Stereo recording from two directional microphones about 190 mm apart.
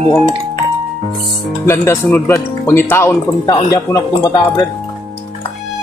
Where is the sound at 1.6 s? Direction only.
15° left (ahead or behind).